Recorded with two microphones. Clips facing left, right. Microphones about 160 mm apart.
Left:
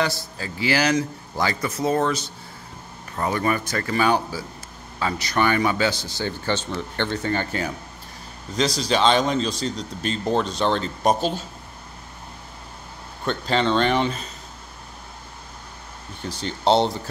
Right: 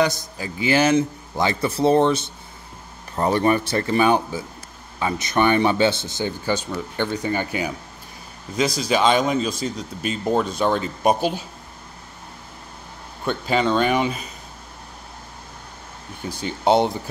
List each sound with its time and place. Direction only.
0.0 s speech: 15° right (ahead or behind)
13.2 s speech: 10° right (ahead or behind)
16.2 s speech: 10° right (ahead or behind)